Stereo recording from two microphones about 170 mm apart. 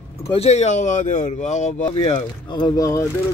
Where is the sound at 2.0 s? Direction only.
25° left (ahead or behind).